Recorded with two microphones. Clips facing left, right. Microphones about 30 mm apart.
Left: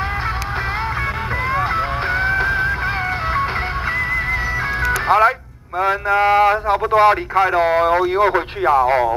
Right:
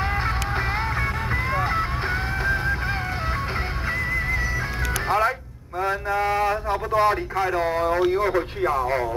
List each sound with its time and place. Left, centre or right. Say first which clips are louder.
1.5 s music: left 6 dB; centre
4.8 s music: left 8 dB; left
5.8 s a sound: left 7 dB; left
8.1 s speech: left 6 dB; left